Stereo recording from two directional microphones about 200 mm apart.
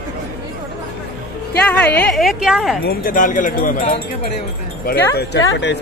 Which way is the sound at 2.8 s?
45° left (ahead or behind).